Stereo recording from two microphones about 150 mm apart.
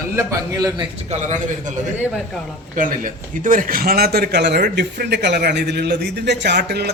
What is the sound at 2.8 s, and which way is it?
A man's voice, 65° right (ahead or behind).